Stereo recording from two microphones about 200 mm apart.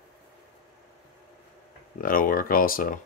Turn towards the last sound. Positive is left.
turn(degrees=45)  # may be behind; listen again after turning